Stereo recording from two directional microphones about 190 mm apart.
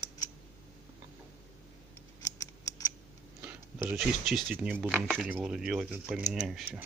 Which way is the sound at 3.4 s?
15° right (ahead or behind).